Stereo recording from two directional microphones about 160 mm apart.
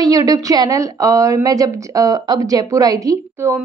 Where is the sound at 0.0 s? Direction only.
25° right (ahead or behind).